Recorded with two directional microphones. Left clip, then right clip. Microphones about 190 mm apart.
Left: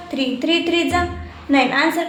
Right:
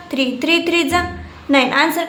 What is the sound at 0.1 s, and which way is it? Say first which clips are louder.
A woman's voice: right 3 dB; 25° right (ahead or behind).